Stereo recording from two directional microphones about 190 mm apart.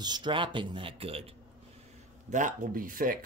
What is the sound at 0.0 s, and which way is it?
Speech, 25° right (ahead or behind).